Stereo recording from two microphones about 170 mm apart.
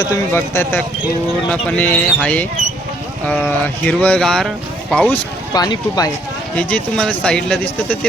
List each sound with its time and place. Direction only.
0.3 s speech: 10° left (ahead or behind)
5.5 s speech: 25° left (ahead or behind)
6.6 s speech: 5° left (ahead or behind)